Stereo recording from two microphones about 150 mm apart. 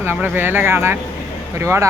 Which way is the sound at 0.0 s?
15° right (ahead or behind).